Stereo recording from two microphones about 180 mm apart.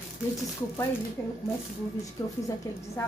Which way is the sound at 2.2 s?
20° left (ahead or behind).